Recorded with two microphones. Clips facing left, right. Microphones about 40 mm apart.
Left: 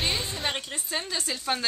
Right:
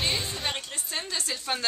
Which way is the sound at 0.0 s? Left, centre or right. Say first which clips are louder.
Left 1 dB; centre.